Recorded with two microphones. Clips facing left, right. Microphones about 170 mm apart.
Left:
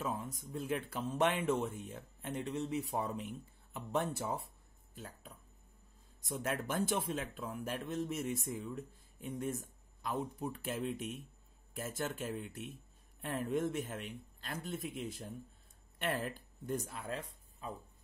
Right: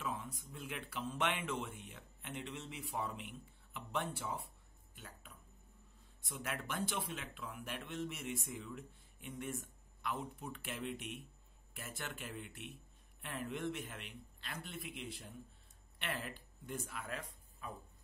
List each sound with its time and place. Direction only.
0.0 s a man's voice: 40° left (ahead or behind)